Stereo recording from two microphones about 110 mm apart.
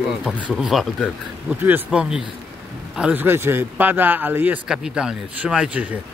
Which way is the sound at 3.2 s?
20° right (ahead or behind).